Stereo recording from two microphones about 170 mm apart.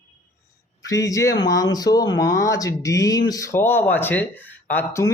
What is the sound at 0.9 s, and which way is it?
Speech, 20° left (ahead or behind).